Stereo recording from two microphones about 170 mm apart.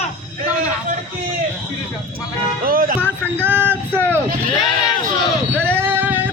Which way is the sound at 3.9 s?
10° left (ahead or behind).